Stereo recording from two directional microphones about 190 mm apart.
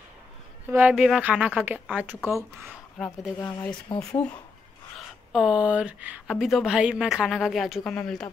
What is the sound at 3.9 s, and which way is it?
Speech, 20° left (ahead or behind).